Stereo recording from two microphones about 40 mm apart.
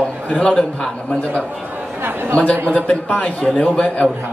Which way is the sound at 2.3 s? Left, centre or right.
Left.